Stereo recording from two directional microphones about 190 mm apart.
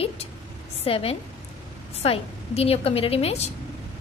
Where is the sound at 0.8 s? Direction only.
30° left (ahead or behind).